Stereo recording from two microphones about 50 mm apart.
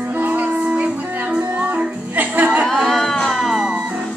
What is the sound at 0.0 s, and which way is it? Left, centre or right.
Music, right.